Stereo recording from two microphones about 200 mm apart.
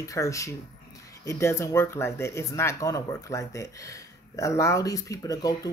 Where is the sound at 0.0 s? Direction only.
15° left (ahead or behind).